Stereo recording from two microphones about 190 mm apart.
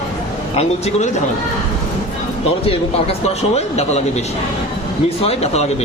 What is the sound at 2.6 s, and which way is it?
A man's voice, 35° left (ahead or behind).